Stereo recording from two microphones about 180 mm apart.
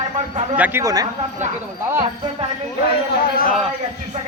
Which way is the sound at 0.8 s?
20° right (ahead or behind).